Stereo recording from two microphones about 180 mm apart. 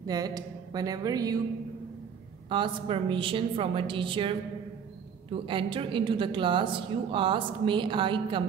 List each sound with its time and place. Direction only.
0.0 s a woman's voice: 20° right (ahead or behind)
2.5 s a woman's voice: 30° right (ahead or behind)